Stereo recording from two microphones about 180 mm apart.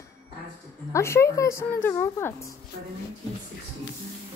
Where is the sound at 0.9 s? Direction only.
15° left (ahead or behind).